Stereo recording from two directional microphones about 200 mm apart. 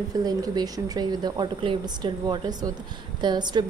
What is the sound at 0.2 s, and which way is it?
A woman's voice, 20° right (ahead or behind).